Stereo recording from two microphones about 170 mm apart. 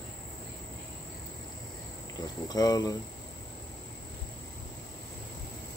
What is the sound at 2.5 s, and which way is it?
Speech, 20° left (ahead or behind).